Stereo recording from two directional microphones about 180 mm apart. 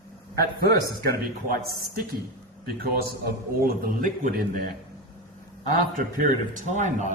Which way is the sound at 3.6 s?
50° right (ahead or behind).